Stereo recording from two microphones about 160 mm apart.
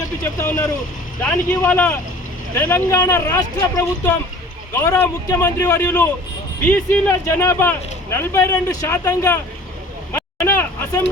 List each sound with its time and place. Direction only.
0.3 s speech: 15° left (ahead or behind)
6.7 s speech: 10° left (ahead or behind)
10.1 s vehicle: 15° left (ahead or behind)